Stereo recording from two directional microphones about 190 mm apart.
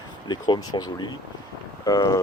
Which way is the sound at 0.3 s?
20° left (ahead or behind).